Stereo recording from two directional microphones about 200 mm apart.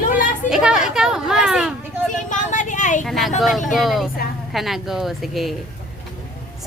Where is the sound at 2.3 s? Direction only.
40° left (ahead or behind).